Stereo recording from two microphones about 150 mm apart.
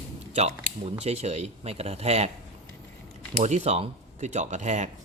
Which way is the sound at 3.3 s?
50° right (ahead or behind).